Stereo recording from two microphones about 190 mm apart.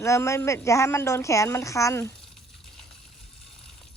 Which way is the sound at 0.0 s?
15° left (ahead or behind).